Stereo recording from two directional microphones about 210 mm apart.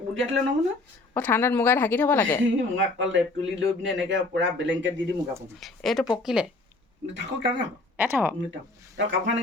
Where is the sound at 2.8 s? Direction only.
65° right (ahead or behind).